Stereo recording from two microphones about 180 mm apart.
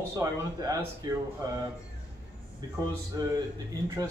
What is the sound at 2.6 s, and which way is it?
Speech, 20° right (ahead or behind).